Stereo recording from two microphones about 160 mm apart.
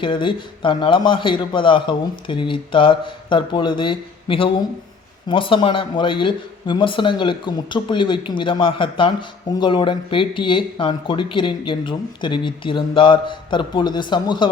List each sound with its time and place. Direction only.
0.0 s a man's voice: 30° left (ahead or behind)